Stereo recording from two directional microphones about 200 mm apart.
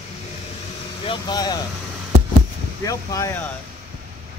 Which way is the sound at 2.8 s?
15° left (ahead or behind).